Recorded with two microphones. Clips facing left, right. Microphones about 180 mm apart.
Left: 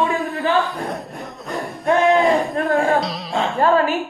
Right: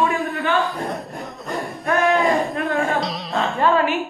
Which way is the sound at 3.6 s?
40° left (ahead or behind).